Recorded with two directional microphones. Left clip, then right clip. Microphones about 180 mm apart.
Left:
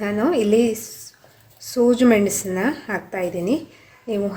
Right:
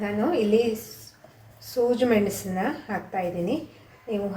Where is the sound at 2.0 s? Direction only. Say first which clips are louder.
Left 5 dB; 50° left (ahead or behind).